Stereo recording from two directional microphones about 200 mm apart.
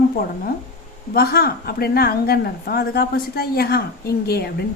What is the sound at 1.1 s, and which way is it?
A woman's voice, 50° left (ahead or behind).